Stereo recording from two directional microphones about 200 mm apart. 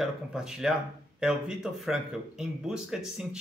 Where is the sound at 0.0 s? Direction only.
Centre (ahead or behind).